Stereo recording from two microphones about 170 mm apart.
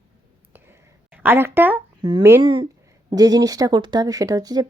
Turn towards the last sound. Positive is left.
turn(degrees=-20)  # may be behind; listen again after turning